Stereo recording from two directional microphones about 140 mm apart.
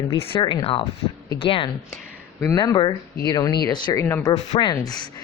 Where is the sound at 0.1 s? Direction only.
35° left (ahead or behind).